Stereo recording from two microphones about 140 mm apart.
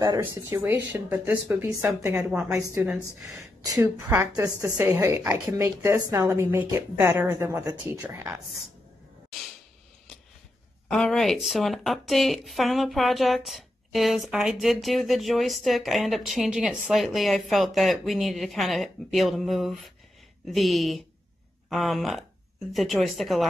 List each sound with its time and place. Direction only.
0.2 s a woman's voice: 15° right (ahead or behind)
10.9 s a woman's voice: 5° left (ahead or behind)